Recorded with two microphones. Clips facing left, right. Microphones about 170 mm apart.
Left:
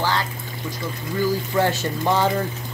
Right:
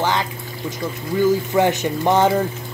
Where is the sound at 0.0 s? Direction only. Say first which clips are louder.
Right 3 dB; 20° right (ahead or behind).